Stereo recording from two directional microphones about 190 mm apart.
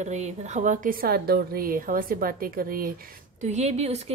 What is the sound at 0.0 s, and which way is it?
Speech, 35° right (ahead or behind).